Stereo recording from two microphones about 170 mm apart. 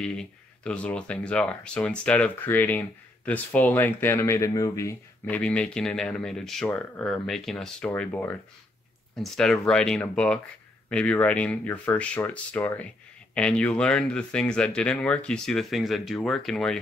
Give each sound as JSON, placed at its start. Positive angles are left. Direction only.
{"t": 0.0, "sound": "speech", "side_deg": 5}
{"t": 5.3, "sound": "speech", "side_deg": 5}